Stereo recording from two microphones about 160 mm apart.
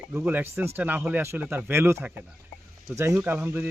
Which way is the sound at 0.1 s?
10° right (ahead or behind).